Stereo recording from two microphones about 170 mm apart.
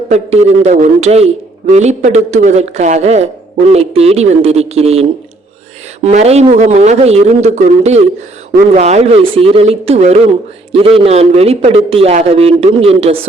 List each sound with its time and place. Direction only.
0.1 s a man's voice: 40° right (ahead or behind)